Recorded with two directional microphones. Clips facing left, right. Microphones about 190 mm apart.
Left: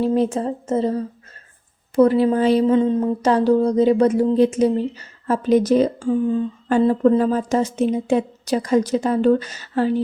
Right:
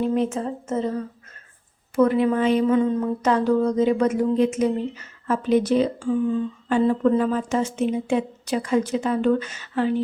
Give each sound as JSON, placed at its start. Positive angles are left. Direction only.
{"t": 0.0, "sound": "speech", "side_deg": 35}